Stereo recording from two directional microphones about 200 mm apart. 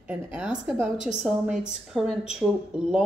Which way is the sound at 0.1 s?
5° right (ahead or behind).